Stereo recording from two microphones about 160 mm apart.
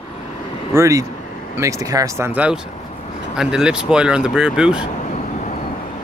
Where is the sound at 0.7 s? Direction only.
20° right (ahead or behind).